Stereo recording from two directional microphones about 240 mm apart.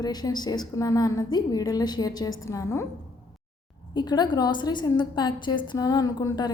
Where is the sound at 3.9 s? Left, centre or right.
Centre.